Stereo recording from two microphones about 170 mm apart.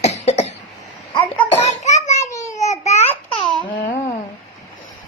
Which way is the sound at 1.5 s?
40° left (ahead or behind).